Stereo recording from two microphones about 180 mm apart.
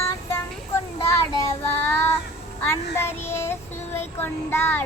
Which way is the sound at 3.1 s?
15° left (ahead or behind).